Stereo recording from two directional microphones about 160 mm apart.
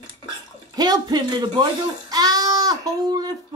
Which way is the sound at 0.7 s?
25° right (ahead or behind).